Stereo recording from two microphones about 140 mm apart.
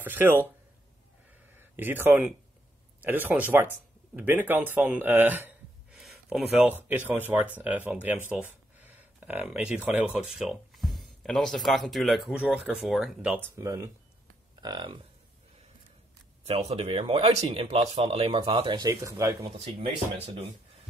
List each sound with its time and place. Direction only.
0.0 s speech: 15° right (ahead or behind)
1.5 s a sound: 15° right (ahead or behind)
3.0 s speech: 10° right (ahead or behind)
13.6 s speech: 20° right (ahead or behind)
14.5 s speech: 30° right (ahead or behind)
16.4 s speech: 45° right (ahead or behind); by 19.3 s 20° right (ahead or behind)
19.6 s speech: 45° right (ahead or behind)